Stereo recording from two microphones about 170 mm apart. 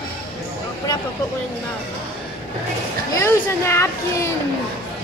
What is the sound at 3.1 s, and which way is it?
A child's voice, 15° left (ahead or behind).